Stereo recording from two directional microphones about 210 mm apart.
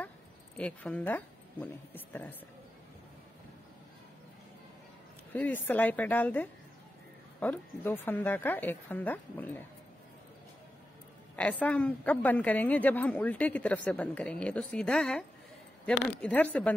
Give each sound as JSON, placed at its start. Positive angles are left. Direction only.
{"t": 0.6, "sound": "a woman's voice", "side_deg": 5}
{"t": 5.3, "sound": "a woman's voice", "side_deg": 10}
{"t": 11.3, "sound": "a woman's voice", "side_deg": 5}